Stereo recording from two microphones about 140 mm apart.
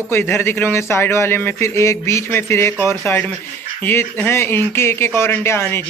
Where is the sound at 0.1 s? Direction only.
15° left (ahead or behind).